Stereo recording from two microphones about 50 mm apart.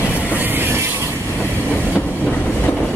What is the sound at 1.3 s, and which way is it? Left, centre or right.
Train, left.